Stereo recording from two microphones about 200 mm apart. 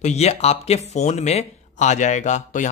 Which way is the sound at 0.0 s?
30° left (ahead or behind).